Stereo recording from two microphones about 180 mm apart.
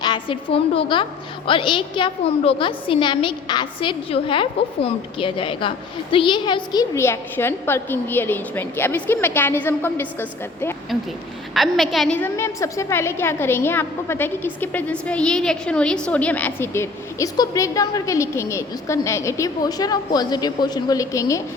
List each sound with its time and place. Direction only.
0.0 s a woman's voice: 25° left (ahead or behind)
11.5 s a woman's voice: centre (ahead or behind); by 21.4 s 15° left (ahead or behind)